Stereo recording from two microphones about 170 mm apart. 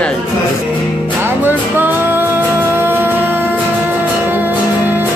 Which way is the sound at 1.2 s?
10° right (ahead or behind).